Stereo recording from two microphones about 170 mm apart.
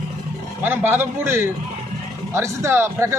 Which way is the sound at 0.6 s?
10° right (ahead or behind).